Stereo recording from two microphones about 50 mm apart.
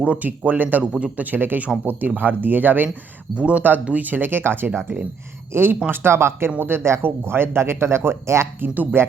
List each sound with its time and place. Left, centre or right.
0.2 s speech: right
3.3 s speech: right
8.7 s speech: right